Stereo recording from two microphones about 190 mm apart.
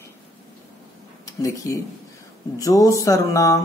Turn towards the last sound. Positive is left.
turn(degrees=15)  # may be behind; listen again after turning